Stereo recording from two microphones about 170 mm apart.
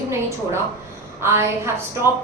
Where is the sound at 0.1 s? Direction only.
15° right (ahead or behind).